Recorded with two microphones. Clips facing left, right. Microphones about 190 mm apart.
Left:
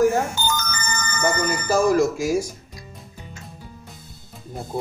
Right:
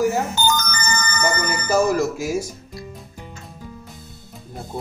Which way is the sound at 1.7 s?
5° right (ahead or behind).